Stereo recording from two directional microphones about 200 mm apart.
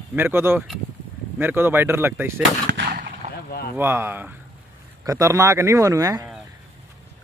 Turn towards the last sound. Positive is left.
turn(degrees=-15)  # may be behind; listen again after turning